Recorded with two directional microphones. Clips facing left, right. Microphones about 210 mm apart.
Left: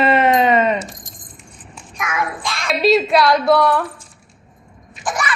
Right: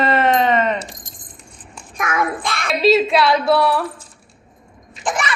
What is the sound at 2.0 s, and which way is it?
Child singing, 55° right (ahead or behind).